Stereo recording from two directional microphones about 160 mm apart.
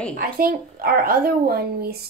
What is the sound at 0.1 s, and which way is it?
Speech, 65° right (ahead or behind).